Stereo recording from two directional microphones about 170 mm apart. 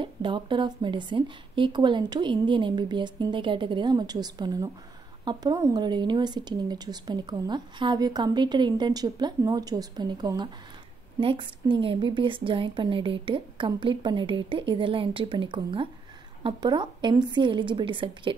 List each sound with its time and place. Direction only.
0.0 s a woman's voice: 30° right (ahead or behind)